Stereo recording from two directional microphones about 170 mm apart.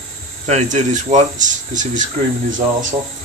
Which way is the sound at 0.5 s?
40° right (ahead or behind).